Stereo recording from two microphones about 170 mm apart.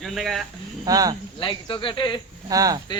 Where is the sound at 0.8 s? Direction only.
20° right (ahead or behind).